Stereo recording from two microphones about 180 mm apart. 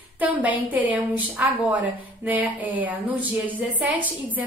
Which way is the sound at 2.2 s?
10° right (ahead or behind).